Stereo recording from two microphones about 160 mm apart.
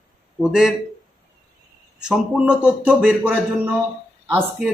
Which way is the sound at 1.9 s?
5° right (ahead or behind).